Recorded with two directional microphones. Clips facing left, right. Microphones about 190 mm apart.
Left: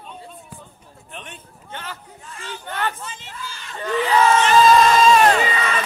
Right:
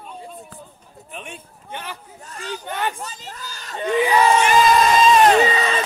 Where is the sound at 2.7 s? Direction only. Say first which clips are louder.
Even; 15° right (ahead or behind).